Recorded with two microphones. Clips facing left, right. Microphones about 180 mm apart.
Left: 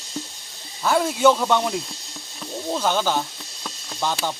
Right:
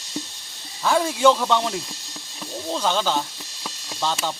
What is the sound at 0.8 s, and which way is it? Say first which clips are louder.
Speech: even; 5° left (ahead or behind).